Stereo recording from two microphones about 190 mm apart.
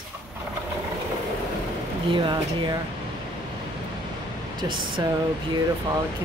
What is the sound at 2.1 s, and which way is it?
Speech, 25° right (ahead or behind).